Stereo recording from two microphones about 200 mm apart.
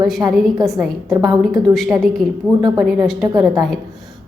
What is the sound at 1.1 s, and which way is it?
Speech, 15° right (ahead or behind).